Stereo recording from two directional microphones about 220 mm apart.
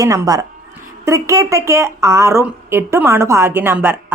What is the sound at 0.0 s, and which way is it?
A woman's voice, 15° right (ahead or behind).